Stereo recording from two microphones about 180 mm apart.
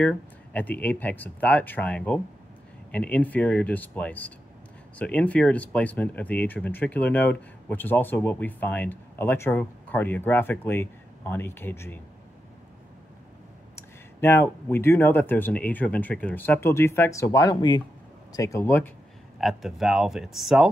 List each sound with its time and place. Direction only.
0.0 s speech: 10° left (ahead or behind)
13.7 s speech: 10° left (ahead or behind)
19.3 s speech: centre (ahead or behind)